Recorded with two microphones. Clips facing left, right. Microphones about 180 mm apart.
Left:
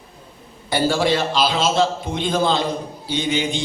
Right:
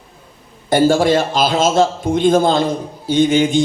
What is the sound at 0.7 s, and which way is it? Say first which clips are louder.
A man's voice: right 6 dB; 45° right (ahead or behind).